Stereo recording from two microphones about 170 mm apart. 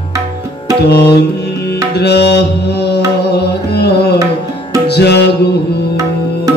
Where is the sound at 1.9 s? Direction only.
75° left (ahead or behind).